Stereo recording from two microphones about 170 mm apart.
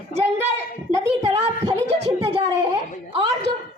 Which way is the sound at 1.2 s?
40° right (ahead or behind).